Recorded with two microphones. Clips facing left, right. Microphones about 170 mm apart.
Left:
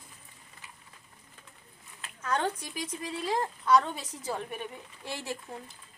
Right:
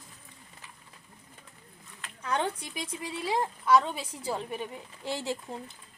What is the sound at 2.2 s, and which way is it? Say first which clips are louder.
A woman's voice: even; 15° right (ahead or behind).